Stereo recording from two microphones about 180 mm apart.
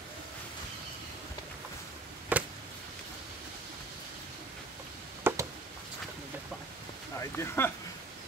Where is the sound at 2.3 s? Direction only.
10° right (ahead or behind).